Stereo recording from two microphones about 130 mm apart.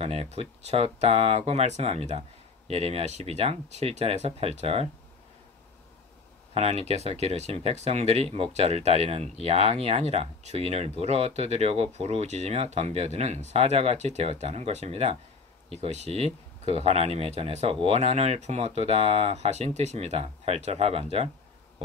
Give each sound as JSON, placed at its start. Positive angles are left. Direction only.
{"t": 0.0, "sound": "speech", "side_deg": -50}
{"t": 6.5, "sound": "speech", "side_deg": -55}